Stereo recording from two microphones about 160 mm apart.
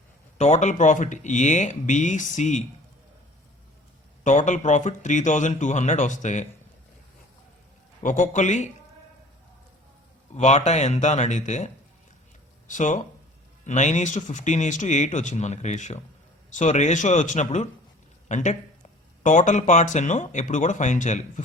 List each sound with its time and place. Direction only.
0.3 s speech: 45° left (ahead or behind)
4.2 s speech: 50° left (ahead or behind)
8.0 s speech: 50° left (ahead or behind)
10.3 s speech: 45° left (ahead or behind)